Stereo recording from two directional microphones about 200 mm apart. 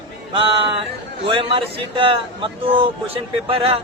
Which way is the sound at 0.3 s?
25° right (ahead or behind).